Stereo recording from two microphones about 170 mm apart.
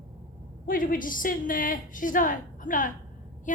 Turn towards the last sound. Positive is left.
turn(degrees=50)  # may be behind; listen again after turning